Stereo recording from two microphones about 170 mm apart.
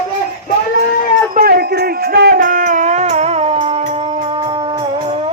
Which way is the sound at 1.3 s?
60° right (ahead or behind).